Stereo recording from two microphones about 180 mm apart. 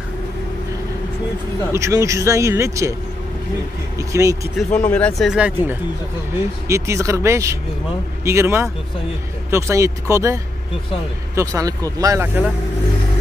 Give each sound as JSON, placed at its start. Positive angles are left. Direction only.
{"t": 1.7, "sound": "speech", "side_deg": -15}
{"t": 4.1, "sound": "speech", "side_deg": -20}
{"t": 4.6, "sound": "speech", "side_deg": 5}
{"t": 6.7, "sound": "speech", "side_deg": -15}